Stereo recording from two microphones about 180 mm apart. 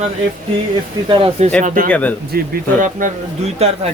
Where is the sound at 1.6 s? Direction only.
50° right (ahead or behind).